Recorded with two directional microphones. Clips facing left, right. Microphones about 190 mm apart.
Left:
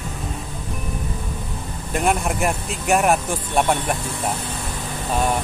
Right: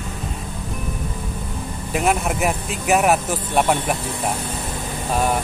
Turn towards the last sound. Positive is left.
turn(degrees=-5)  # may be behind; listen again after turning